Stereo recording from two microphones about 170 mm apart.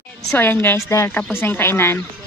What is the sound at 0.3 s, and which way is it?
A woman's voice, 10° left (ahead or behind).